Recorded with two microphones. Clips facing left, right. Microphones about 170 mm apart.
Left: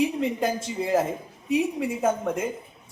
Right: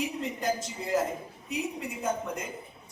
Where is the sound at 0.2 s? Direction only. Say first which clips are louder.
Left 5 dB; 75° left (ahead or behind).